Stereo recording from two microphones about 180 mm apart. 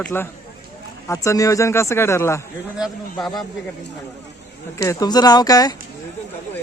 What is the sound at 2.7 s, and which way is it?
Speech, centre (ahead or behind).